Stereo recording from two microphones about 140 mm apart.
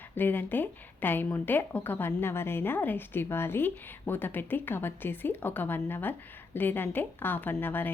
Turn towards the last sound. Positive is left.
turn(degrees=15)  # may be behind; listen again after turning